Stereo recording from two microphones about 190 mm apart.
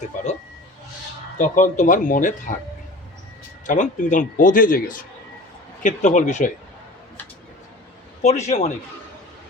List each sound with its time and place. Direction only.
0.1 s a man's voice: 45° left (ahead or behind)
1.4 s a man's voice: 40° left (ahead or behind)
3.7 s a man's voice: 45° left (ahead or behind)
8.2 s speech: 35° left (ahead or behind)